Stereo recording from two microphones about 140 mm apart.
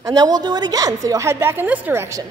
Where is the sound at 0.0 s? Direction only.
25° right (ahead or behind).